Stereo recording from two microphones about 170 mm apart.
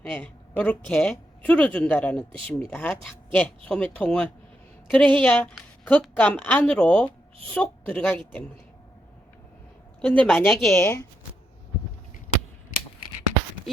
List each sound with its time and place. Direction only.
0.0 s a woman's voice: 5° left (ahead or behind)
10.0 s a woman's voice: 10° left (ahead or behind)